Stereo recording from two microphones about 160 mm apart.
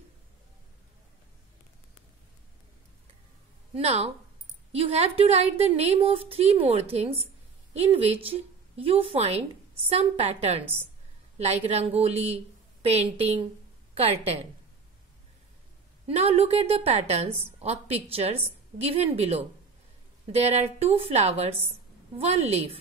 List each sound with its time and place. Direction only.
3.7 s a woman's voice: 40° right (ahead or behind)
10.6 s a woman's voice: 15° right (ahead or behind)
11.3 s a woman's voice: 40° right (ahead or behind)
16.1 s a woman's voice: 40° right (ahead or behind)